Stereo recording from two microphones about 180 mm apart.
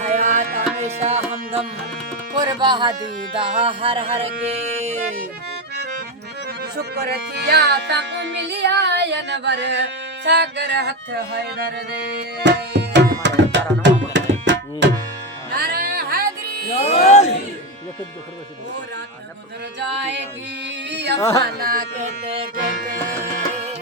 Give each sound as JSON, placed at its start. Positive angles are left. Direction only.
{"t": 0.0, "sound": "music", "side_deg": -40}
{"t": 0.8, "sound": "music", "side_deg": -35}
{"t": 2.4, "sound": "speech", "side_deg": -25}
{"t": 3.3, "sound": "music", "side_deg": -30}
{"t": 6.6, "sound": "music", "side_deg": -60}
{"t": 12.1, "sound": "tabla", "side_deg": -70}
{"t": 15.5, "sound": "music", "side_deg": -60}
{"t": 16.7, "sound": "music", "side_deg": 35}
{"t": 20.9, "sound": "carnatic music", "side_deg": -70}
{"t": 21.2, "sound": "carnatic music", "side_deg": 15}
{"t": 21.6, "sound": "speech", "side_deg": -50}
{"t": 22.5, "sound": "music", "side_deg": -50}